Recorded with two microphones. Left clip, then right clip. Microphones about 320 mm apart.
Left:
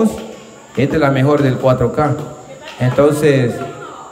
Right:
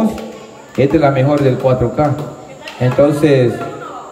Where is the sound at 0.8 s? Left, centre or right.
Centre.